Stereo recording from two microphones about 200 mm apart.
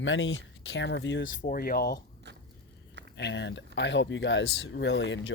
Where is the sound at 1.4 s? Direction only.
45° left (ahead or behind).